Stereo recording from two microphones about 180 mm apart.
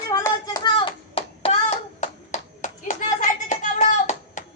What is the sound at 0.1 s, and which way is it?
Hands, 15° left (ahead or behind).